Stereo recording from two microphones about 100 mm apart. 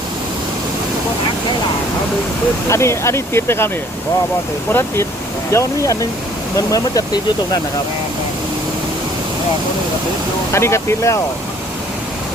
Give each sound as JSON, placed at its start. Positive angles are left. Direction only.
{"t": 2.6, "sound": "speech", "side_deg": 30}
{"t": 4.7, "sound": "speech", "side_deg": 25}
{"t": 10.5, "sound": "speech", "side_deg": 25}